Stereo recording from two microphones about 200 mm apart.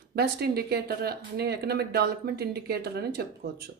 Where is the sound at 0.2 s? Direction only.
55° right (ahead or behind).